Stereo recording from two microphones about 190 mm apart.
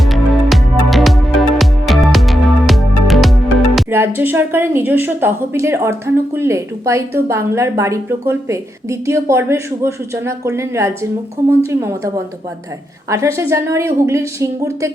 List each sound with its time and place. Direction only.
0.0 s music: centre (ahead or behind)
3.8 s a woman's voice: 10° right (ahead or behind)